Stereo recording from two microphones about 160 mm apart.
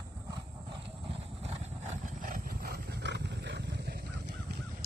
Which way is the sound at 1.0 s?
40° right (ahead or behind).